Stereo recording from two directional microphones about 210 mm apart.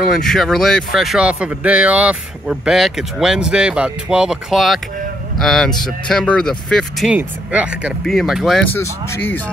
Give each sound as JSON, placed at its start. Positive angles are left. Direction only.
{"t": 0.0, "sound": "speech", "side_deg": 0}